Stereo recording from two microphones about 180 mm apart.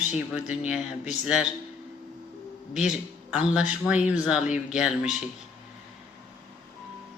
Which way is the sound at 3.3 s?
5° right (ahead or behind).